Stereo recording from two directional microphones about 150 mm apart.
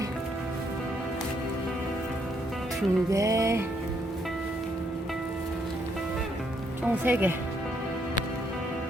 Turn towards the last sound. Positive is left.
turn(degrees=-15)  # may be behind; listen again after turning